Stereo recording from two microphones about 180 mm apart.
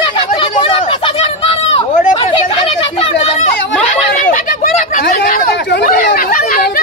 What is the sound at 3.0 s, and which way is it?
Children playing, 35° left (ahead or behind).